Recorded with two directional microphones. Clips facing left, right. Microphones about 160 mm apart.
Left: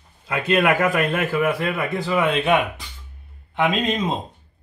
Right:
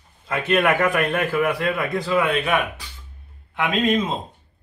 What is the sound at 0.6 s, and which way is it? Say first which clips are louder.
A man's voice: left 1 dB; 10° left (ahead or behind).